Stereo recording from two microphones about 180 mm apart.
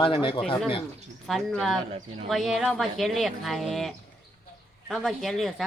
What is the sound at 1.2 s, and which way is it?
Speech, centre (ahead or behind).